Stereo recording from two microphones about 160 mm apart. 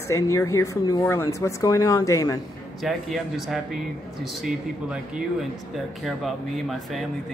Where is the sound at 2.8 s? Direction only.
Centre (ahead or behind).